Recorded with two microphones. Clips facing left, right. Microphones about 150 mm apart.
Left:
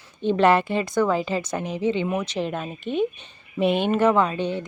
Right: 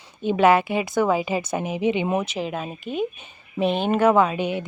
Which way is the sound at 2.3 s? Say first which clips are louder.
Left 1 dB; 5° right (ahead or behind).